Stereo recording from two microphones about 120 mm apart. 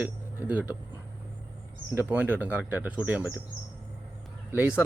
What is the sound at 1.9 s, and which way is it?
Speech, 15° right (ahead or behind).